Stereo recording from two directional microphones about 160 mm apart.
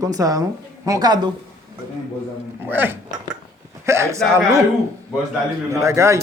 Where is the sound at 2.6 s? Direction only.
15° right (ahead or behind).